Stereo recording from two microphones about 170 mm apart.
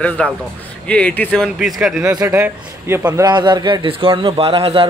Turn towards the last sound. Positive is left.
turn(degrees=-30)  # may be behind; listen again after turning